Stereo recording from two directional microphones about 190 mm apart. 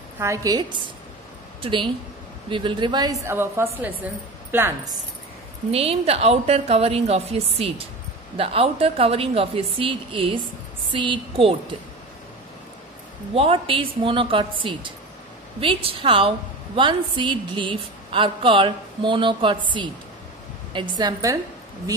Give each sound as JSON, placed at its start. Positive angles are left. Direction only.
{"t": 0.2, "sound": "a woman's voice", "side_deg": -15}
{"t": 5.7, "sound": "a woman's voice", "side_deg": -30}
{"t": 13.3, "sound": "a woman's voice", "side_deg": -30}